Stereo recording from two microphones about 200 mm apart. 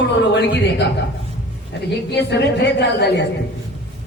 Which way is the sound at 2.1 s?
60° left (ahead or behind).